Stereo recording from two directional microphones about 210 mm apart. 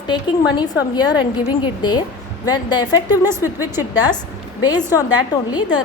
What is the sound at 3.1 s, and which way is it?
Speech, 10° right (ahead or behind).